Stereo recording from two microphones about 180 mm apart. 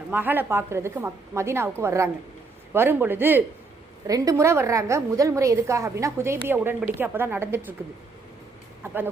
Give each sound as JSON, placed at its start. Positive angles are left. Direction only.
{"t": 0.1, "sound": "a woman's voice", "side_deg": -10}